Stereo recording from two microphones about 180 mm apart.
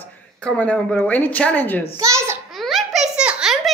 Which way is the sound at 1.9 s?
15° right (ahead or behind).